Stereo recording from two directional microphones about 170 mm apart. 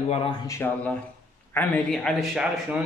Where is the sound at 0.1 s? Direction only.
35° left (ahead or behind).